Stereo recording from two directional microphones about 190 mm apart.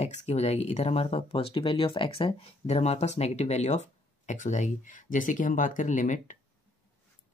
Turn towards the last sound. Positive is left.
turn(degrees=40)  # may be behind; listen again after turning